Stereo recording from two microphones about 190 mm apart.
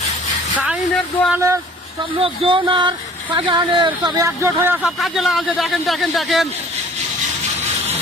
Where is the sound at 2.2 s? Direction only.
25° right (ahead or behind).